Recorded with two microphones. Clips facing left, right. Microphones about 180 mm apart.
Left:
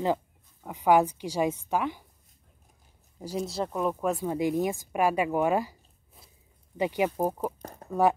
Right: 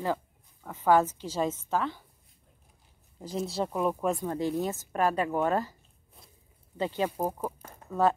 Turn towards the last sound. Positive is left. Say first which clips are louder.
# left 4 dB
turn(degrees=40)  # may be behind; listen again after turning